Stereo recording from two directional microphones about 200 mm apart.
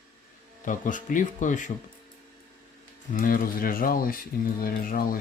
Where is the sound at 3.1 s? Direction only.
45° left (ahead or behind).